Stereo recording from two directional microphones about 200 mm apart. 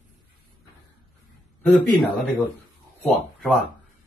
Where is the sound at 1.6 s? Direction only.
5° left (ahead or behind).